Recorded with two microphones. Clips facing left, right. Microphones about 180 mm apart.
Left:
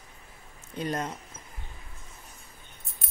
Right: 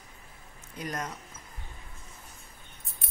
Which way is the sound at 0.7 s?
30° left (ahead or behind).